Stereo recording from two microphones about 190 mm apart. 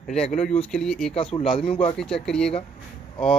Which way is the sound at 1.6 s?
30° left (ahead or behind).